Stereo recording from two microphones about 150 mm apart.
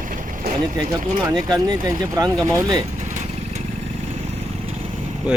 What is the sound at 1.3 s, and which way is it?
Speech, 25° right (ahead or behind).